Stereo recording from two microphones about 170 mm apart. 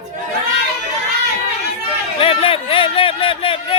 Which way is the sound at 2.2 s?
30° left (ahead or behind).